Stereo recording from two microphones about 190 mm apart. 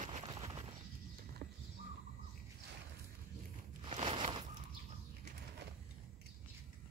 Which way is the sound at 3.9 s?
30° right (ahead or behind).